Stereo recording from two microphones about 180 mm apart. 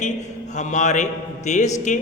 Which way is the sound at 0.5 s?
40° left (ahead or behind).